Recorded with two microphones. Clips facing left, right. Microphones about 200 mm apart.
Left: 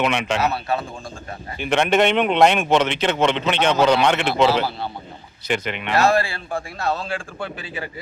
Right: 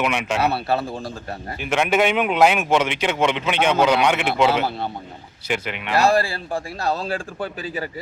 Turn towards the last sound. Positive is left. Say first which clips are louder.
# right 3 dB
turn(degrees=-40)  # may be behind; listen again after turning